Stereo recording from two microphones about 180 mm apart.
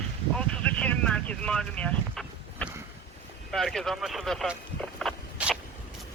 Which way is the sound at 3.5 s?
Centre (ahead or behind).